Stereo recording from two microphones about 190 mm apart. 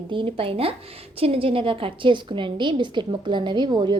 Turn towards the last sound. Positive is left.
turn(degrees=-25)  # may be behind; listen again after turning